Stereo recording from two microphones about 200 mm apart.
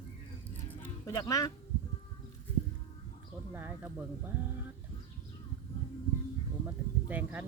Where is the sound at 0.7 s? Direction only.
15° left (ahead or behind).